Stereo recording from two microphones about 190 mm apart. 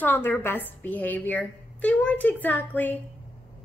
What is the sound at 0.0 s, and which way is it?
A child's voice, 10° left (ahead or behind).